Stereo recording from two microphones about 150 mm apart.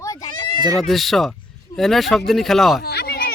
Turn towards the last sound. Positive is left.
turn(degrees=90)